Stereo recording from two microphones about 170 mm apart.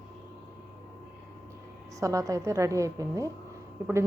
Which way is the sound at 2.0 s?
20° right (ahead or behind).